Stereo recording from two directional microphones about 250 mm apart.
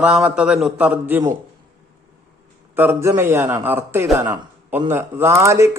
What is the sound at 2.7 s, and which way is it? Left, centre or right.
Speech, centre.